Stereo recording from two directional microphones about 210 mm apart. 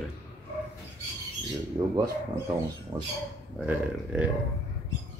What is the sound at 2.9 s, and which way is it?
Speech, 25° right (ahead or behind).